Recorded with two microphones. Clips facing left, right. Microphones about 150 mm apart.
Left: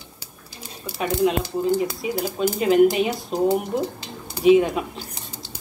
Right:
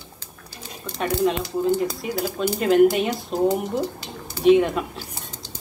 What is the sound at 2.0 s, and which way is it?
Speech, 5° left (ahead or behind).